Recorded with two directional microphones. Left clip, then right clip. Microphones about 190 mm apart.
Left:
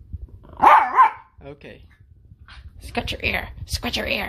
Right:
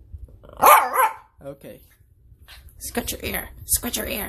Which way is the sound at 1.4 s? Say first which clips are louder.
Right 2 dB; 25° right (ahead or behind).